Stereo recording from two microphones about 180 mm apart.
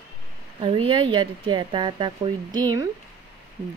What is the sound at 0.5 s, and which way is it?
A woman's voice, 30° right (ahead or behind).